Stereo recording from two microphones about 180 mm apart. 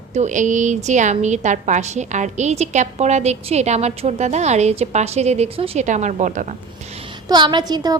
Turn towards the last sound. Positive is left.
turn(degrees=-20)  # may be behind; listen again after turning